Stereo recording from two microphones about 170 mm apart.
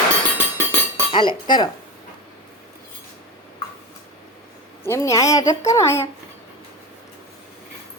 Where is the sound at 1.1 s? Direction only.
30° left (ahead or behind).